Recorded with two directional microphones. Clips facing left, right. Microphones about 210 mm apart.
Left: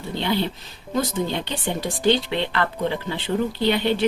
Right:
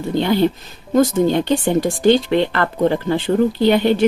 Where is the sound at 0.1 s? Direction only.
45° right (ahead or behind).